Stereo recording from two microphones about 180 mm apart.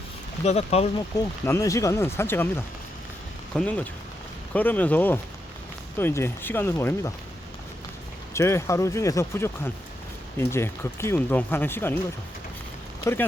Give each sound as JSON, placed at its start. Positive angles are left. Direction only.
{"t": 0.4, "sound": "speech", "side_deg": 35}
{"t": 0.9, "sound": "speech", "side_deg": 20}
{"t": 8.3, "sound": "speech", "side_deg": 15}